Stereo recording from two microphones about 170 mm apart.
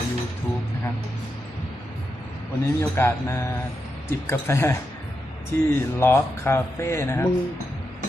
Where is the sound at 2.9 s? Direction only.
15° left (ahead or behind).